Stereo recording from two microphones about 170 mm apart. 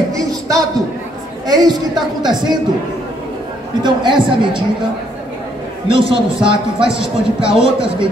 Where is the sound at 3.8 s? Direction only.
30° right (ahead or behind).